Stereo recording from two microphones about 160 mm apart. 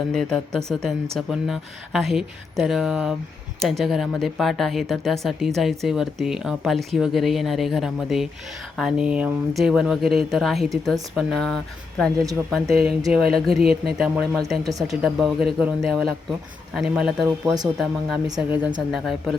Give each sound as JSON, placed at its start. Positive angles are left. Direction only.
{"t": 0.1, "sound": "speech", "side_deg": 5}
{"t": 14.7, "sound": "speech", "side_deg": -20}
{"t": 15.0, "sound": "speech", "side_deg": 0}